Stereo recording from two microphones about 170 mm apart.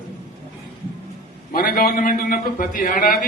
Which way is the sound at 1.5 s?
60° left (ahead or behind).